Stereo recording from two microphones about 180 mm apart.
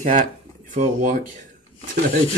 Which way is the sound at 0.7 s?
50° right (ahead or behind).